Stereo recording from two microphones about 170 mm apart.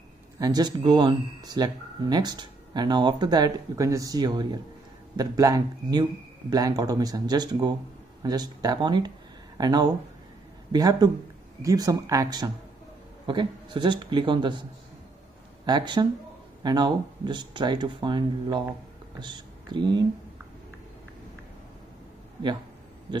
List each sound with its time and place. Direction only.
0.4 s speech: 25° right (ahead or behind)
15.6 s speech: 25° right (ahead or behind)